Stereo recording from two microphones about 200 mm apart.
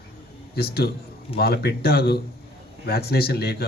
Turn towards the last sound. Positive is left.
turn(degrees=50)  # may be behind; listen again after turning